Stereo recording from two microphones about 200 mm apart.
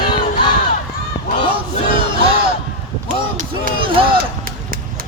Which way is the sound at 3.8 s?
25° right (ahead or behind).